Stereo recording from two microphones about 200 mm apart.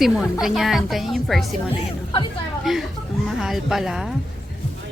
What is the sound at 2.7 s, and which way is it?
A woman's voice, centre (ahead or behind).